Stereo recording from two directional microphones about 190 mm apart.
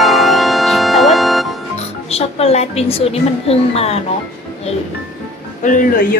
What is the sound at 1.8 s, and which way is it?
Speech, 30° left (ahead or behind).